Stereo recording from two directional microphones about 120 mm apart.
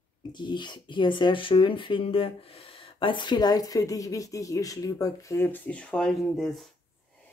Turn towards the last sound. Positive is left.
turn(degrees=5)  # may be behind; listen again after turning